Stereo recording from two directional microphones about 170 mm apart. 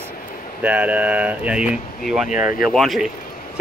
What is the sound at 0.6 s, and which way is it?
Speech, 10° right (ahead or behind).